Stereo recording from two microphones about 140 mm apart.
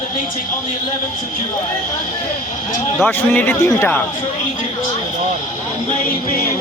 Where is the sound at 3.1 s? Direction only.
15° left (ahead or behind).